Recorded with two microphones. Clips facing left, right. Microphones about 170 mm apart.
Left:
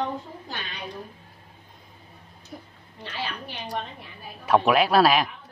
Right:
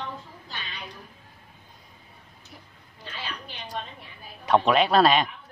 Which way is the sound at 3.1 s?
75° left (ahead or behind).